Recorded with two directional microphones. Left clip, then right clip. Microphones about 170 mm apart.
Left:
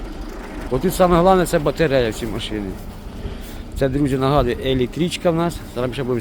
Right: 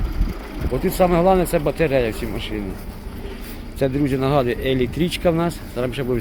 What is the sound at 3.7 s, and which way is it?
Speech, centre (ahead or behind).